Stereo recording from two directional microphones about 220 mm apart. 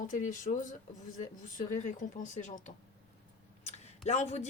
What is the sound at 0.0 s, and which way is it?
Speech, 35° left (ahead or behind).